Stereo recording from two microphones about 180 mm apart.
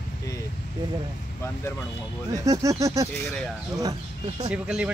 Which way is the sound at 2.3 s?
15° right (ahead or behind).